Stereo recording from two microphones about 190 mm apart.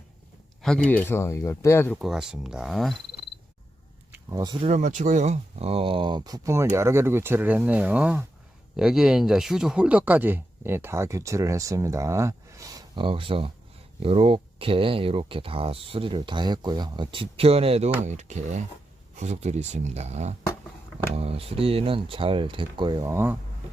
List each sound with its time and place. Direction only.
0.9 s speech: 10° left (ahead or behind)
2.0 s speech: 5° right (ahead or behind)
4.1 s a sound: 15° right (ahead or behind)
4.6 s speech: 40° right (ahead or behind); by 23.4 s 15° right (ahead or behind)